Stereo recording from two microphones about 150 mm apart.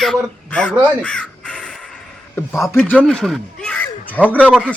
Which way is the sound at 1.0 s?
5° left (ahead or behind).